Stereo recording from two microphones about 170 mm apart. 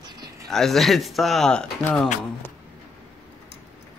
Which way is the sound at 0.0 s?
25° right (ahead or behind).